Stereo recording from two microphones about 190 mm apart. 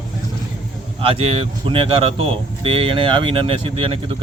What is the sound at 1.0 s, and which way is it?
Speech, 30° right (ahead or behind).